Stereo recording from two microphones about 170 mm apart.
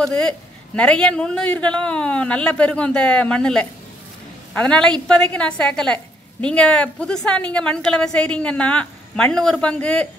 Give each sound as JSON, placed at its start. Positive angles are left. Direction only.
{"t": 0.0, "sound": "a man's voice", "side_deg": 5}